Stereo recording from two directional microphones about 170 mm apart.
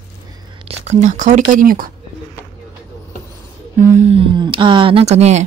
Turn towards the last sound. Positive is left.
turn(degrees=-40)  # may be behind; listen again after turning